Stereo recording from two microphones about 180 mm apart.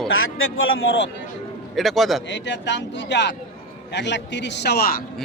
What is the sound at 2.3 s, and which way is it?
A man's voice, 80° left.